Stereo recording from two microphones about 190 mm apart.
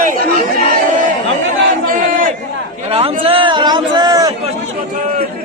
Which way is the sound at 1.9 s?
45° right (ahead or behind).